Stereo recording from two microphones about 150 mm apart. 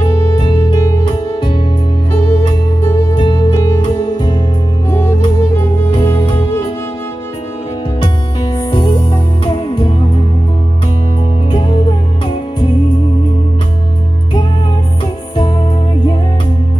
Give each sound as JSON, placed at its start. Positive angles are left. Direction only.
{"t": 0.4, "sound": "music", "side_deg": 35}
{"t": 3.2, "sound": "music", "side_deg": 35}
{"t": 3.5, "sound": "music", "side_deg": 20}
{"t": 3.8, "sound": "music", "side_deg": 30}
{"t": 8.0, "sound": "music", "side_deg": 30}
{"t": 11.5, "sound": "music", "side_deg": 35}